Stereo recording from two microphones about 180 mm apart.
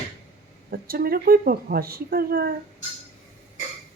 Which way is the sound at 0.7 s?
55° right (ahead or behind).